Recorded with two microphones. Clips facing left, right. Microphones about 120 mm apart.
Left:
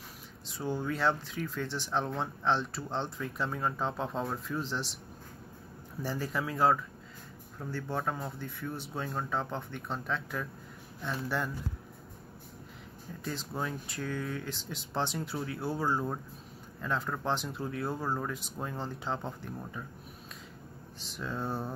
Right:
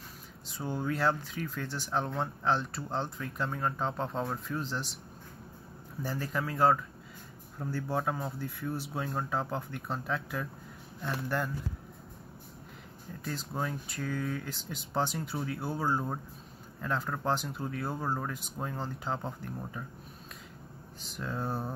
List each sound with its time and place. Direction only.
0.5 s speech: centre (ahead or behind)
6.0 s speech: centre (ahead or behind)
13.2 s speech: centre (ahead or behind)
21.0 s speech: centre (ahead or behind)